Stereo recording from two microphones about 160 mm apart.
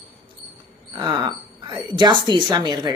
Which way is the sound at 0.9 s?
30° right (ahead or behind).